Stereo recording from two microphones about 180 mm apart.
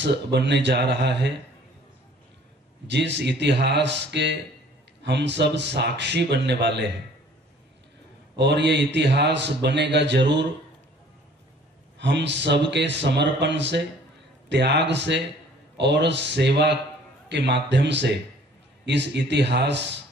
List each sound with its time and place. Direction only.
0.0 s a man's voice: 75° right (ahead or behind)
2.9 s a man's voice: 75° right (ahead or behind)
8.4 s a man's voice: 70° right (ahead or behind)
12.0 s a man's voice: 75° right (ahead or behind)